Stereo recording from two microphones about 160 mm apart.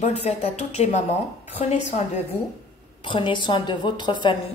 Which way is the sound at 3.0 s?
30° left (ahead or behind).